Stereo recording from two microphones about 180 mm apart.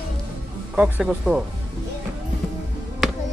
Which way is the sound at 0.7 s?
5° right (ahead or behind).